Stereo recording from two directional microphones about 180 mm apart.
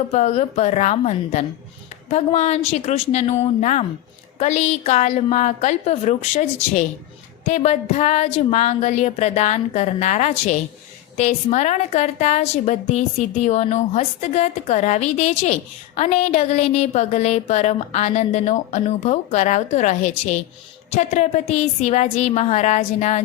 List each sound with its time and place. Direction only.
0.1 s a woman's voice: 35° left (ahead or behind)